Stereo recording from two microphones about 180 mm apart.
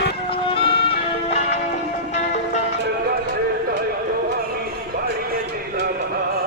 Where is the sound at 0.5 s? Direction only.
30° left (ahead or behind).